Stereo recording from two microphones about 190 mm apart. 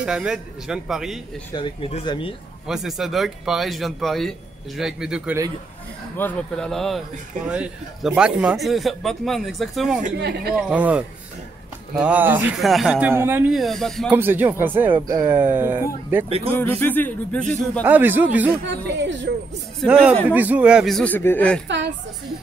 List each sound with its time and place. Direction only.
0.0 s speech: 5° right (ahead or behind)
1.5 s speech: 25° left (ahead or behind)
2.6 s speech: centre (ahead or behind)
6.1 s speech: 5° left (ahead or behind)
10.1 s speech: 60° right (ahead or behind)
10.7 s speech: 5° right (ahead or behind)
14.1 s speech: 10° right (ahead or behind)
16.3 s speech: 30° right (ahead or behind)
16.5 s speech: 10° left (ahead or behind)
17.8 s speech: 10° right (ahead or behind)
19.8 s speech: 5° right (ahead or behind)